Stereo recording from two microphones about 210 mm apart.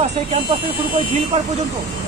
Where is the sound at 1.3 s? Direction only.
30° right (ahead or behind).